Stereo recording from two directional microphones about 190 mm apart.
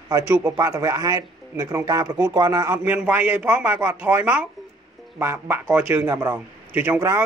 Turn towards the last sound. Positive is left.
turn(degrees=-15)  # may be behind; listen again after turning